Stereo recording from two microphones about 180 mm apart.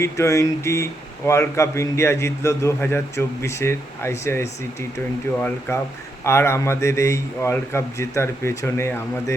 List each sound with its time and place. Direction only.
0.0 s a man's voice: 15° left (ahead or behind)